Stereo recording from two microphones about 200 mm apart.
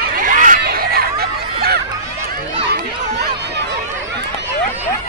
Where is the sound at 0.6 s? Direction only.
50° right (ahead or behind).